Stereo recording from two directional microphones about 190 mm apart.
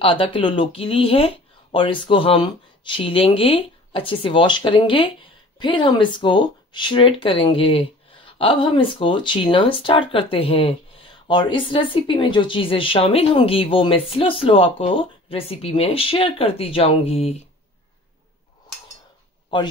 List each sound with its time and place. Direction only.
0.0 s speech: 30° left (ahead or behind)